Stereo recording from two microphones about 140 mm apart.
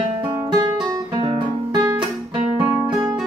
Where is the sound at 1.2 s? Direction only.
40° right (ahead or behind).